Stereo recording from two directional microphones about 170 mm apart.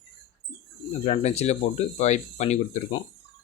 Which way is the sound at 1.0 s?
40° left (ahead or behind).